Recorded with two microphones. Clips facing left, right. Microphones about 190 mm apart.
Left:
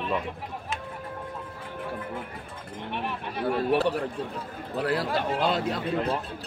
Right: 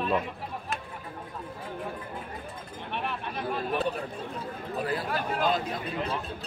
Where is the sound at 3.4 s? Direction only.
75° left (ahead or behind).